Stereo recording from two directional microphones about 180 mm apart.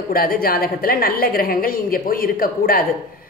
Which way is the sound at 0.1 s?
55° left (ahead or behind).